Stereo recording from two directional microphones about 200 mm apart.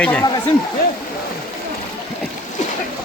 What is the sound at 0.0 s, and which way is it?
Speech, 5° left (ahead or behind).